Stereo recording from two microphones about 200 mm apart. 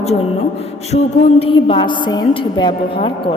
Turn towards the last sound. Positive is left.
turn(degrees=25)  # may be behind; listen again after turning